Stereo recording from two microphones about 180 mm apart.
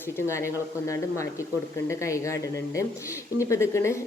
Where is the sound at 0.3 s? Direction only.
15° left (ahead or behind).